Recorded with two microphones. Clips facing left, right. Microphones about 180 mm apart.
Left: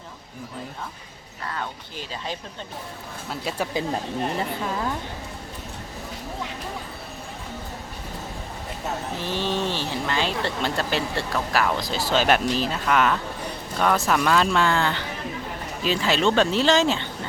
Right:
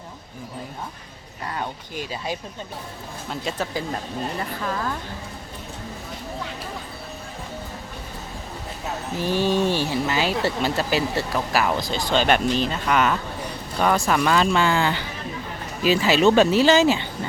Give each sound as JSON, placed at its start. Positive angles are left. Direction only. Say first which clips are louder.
{"t": 1.5, "sound": "speech", "louder": "right 2 dB", "side_deg": -15}
{"t": 3.2, "sound": "speech", "louder": "even", "side_deg": 5}
{"t": 4.6, "sound": "speech", "louder": "even", "side_deg": 20}
{"t": 9.2, "sound": "speech", "louder": "right 6 dB", "side_deg": -10}